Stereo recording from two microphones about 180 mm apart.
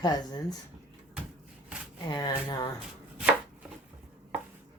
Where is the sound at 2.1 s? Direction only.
25° left (ahead or behind).